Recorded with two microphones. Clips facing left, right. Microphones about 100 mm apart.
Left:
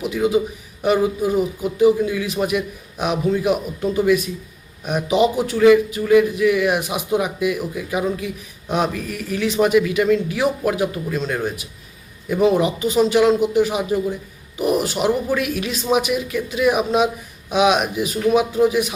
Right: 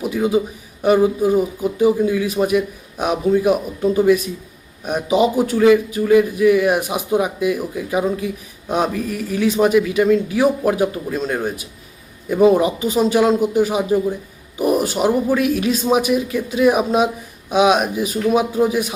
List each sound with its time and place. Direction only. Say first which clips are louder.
0.0 s speech: right 1 dB; 30° right (ahead or behind)
5.4 s speech: left 1 dB; 30° right (ahead or behind)
12.4 s speech: right 3 dB; 30° right (ahead or behind)
14.6 s a sound: right 2 dB; 35° right (ahead or behind)
15.4 s speech: right 5 dB; 35° right (ahead or behind)